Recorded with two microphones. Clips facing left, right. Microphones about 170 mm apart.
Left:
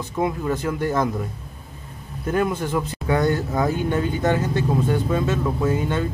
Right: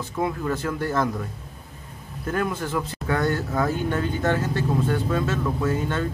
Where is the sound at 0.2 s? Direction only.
15° left (ahead or behind).